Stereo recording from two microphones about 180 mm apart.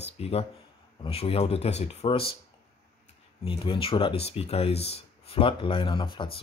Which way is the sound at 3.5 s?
30° left (ahead or behind).